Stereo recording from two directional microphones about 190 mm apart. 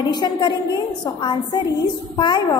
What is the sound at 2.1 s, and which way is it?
Speech, 25° left (ahead or behind).